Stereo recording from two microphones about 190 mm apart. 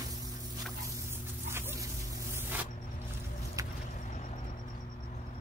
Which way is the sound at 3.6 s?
15° right (ahead or behind).